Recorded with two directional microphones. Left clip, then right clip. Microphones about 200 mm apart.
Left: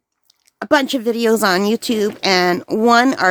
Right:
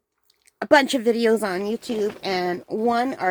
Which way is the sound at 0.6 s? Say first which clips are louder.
Left 1 dB; 15° left (ahead or behind).